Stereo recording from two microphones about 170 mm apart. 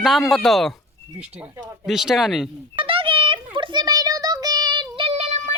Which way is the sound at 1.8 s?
Centre (ahead or behind).